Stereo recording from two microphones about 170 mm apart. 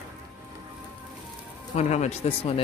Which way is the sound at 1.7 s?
40° left (ahead or behind).